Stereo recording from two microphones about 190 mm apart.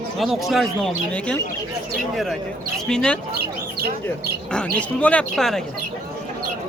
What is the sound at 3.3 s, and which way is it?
Speech, 55° right (ahead or behind).